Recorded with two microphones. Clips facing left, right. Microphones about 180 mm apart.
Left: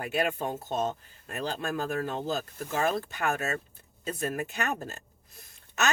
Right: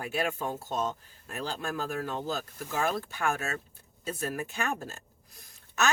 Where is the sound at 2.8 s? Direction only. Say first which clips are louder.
Left 1 dB; 20° left (ahead or behind).